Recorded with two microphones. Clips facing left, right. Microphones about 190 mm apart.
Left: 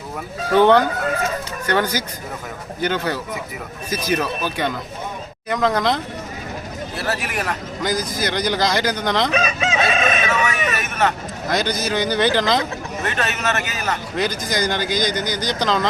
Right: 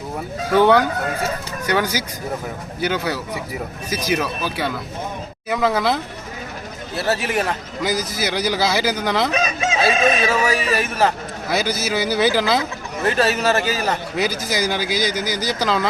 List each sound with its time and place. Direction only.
0.5 s speech: 10° right (ahead or behind)
6.9 s speech: 25° right (ahead or behind)
7.8 s speech: 10° right (ahead or behind)
9.7 s speech: 30° right (ahead or behind)
11.4 s speech: 5° right (ahead or behind)
13.1 s speech: 35° right (ahead or behind)
14.2 s speech: 5° right (ahead or behind)